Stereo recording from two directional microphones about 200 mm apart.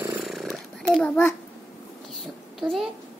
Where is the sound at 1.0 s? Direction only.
5° left (ahead or behind).